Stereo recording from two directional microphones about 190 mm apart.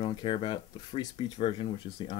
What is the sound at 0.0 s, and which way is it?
Speech, 25° left (ahead or behind).